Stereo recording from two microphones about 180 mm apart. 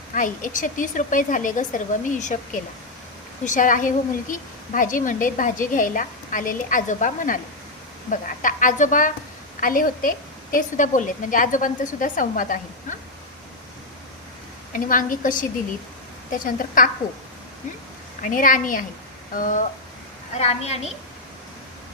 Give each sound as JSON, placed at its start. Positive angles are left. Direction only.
{"t": 0.1, "sound": "a woman's voice", "side_deg": 45}
{"t": 14.7, "sound": "a woman's voice", "side_deg": 50}
{"t": 18.2, "sound": "a woman's voice", "side_deg": 50}